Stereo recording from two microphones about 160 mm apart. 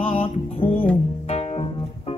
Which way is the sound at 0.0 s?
35° left (ahead or behind).